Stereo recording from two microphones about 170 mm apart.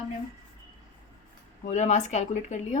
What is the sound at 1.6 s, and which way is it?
Speech, 45° left (ahead or behind).